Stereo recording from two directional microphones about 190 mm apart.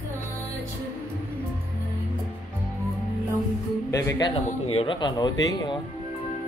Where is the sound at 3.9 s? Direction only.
15° left (ahead or behind).